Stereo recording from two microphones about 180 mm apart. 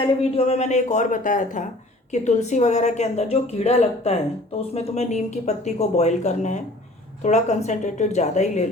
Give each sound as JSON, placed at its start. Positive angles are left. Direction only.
{"t": 0.3, "sound": "a woman's voice", "side_deg": 35}